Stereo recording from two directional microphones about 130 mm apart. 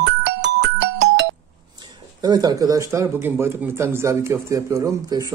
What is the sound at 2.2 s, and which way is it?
Speech, 30° right (ahead or behind).